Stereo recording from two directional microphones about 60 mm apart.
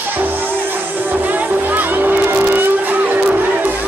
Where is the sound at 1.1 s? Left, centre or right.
Right.